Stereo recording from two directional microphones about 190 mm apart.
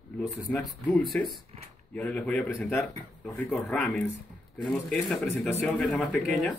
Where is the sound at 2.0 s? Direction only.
5° left (ahead or behind).